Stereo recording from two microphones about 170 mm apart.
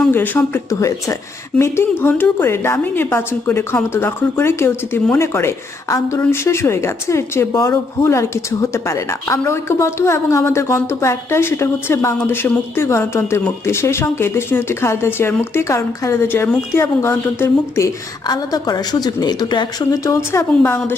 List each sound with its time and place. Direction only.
0.0 s a woman's voice: 10° left (ahead or behind)